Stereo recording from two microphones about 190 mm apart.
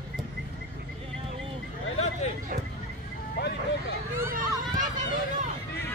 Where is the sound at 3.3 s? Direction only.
60° left (ahead or behind).